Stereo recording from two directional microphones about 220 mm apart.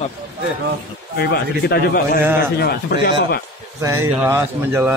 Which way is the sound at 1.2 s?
50° left (ahead or behind).